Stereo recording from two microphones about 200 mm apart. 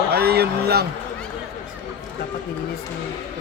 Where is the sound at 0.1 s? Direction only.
50° right (ahead or behind).